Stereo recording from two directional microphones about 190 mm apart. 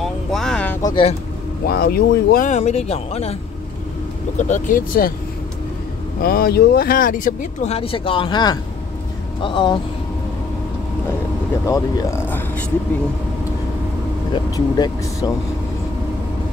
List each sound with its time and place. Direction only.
0.0 s vehicle: centre (ahead or behind)
0.8 s speech: 25° left (ahead or behind)
1.7 s speech: 55° left (ahead or behind); by 3.3 s 30° left (ahead or behind)
4.4 s speech: 40° left (ahead or behind)
6.2 s speech: 50° left (ahead or behind); by 9.8 s 25° left (ahead or behind)
11.6 s speech: 15° left (ahead or behind)
14.3 s speech: 20° left (ahead or behind)